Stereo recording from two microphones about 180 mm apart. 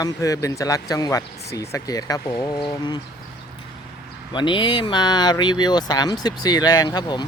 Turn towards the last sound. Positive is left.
turn(degrees=25)  # may be behind; listen again after turning